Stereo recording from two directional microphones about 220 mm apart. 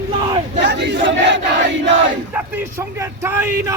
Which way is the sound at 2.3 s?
10° right (ahead or behind).